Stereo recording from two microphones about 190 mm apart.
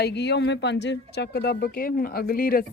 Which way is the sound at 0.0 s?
60° left (ahead or behind).